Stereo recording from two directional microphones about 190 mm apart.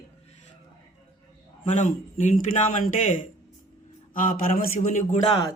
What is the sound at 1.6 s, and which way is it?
A man's voice, 40° left (ahead or behind).